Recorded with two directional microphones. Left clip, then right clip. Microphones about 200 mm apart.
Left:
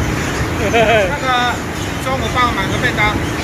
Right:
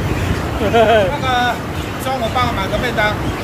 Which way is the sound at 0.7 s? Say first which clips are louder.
Right 1 dB; 15° right (ahead or behind).